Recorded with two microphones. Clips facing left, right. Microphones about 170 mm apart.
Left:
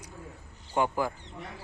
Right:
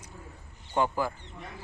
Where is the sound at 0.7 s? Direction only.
15° left (ahead or behind).